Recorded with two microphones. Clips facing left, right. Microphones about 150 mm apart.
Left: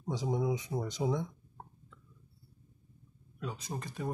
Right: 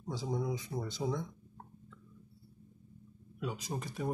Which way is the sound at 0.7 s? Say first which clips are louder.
Left 3 dB; 25° left (ahead or behind).